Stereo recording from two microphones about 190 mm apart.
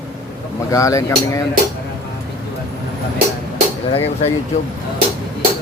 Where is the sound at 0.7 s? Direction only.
15° left (ahead or behind).